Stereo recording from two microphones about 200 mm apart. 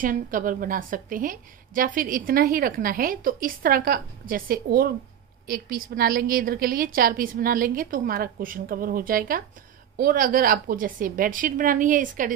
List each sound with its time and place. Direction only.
0.0 s a woman's voice: 45° right (ahead or behind)